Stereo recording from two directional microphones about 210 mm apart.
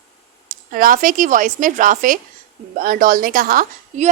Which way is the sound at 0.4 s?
40° right (ahead or behind).